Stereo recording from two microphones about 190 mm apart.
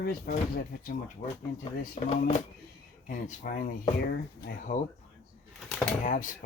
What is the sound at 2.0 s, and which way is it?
Speech, 30° left (ahead or behind).